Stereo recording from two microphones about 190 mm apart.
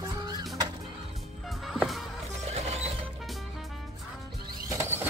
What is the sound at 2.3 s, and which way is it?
Music, 35° right (ahead or behind).